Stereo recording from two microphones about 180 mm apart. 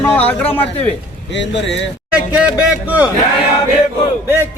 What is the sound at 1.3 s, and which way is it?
Speech, 80° left.